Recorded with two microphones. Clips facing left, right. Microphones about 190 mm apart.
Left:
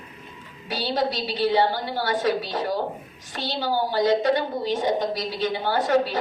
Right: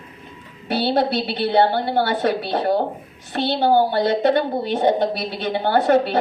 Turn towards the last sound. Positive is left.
turn(degrees=-60)  # may be behind; listen again after turning